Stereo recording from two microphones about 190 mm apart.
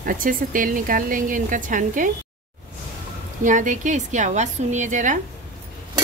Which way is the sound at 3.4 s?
40° right (ahead or behind).